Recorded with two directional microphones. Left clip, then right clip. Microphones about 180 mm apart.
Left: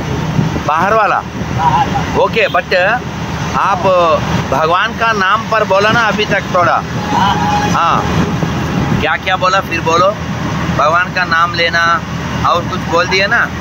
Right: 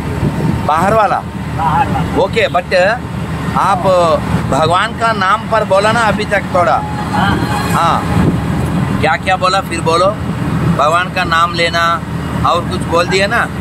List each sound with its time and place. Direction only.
0.7 s speech: centre (ahead or behind)
9.0 s speech: 10° right (ahead or behind)